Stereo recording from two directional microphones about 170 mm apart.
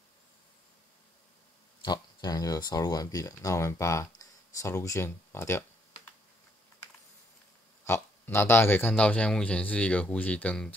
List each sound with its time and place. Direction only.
1.9 s speech: 20° left (ahead or behind)
7.8 s a man's voice: 15° left (ahead or behind)